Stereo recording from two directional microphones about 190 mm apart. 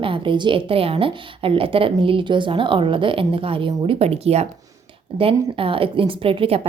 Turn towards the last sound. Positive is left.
turn(degrees=-30)  # may be behind; listen again after turning